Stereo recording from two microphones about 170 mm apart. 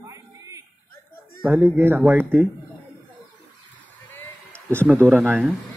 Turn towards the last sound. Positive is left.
turn(degrees=-10)  # may be behind; listen again after turning